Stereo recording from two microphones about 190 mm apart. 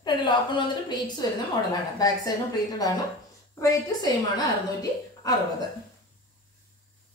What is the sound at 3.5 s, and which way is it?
Speech, 20° left (ahead or behind).